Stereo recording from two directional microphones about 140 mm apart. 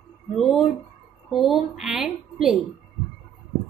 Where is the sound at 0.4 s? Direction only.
5° left (ahead or behind).